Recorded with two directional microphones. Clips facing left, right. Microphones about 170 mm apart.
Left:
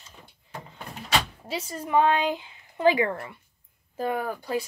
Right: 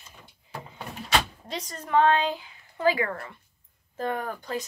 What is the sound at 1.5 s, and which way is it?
Speech, 10° left (ahead or behind).